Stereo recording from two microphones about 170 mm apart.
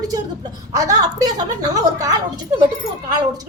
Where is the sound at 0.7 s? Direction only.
20° right (ahead or behind).